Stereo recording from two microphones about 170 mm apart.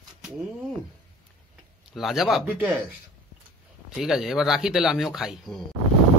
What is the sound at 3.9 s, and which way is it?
Speech, 5° right (ahead or behind).